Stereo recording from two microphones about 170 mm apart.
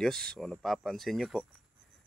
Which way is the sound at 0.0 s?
5° left (ahead or behind).